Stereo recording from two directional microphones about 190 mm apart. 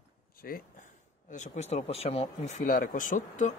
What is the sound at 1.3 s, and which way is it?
Speech, 35° left (ahead or behind).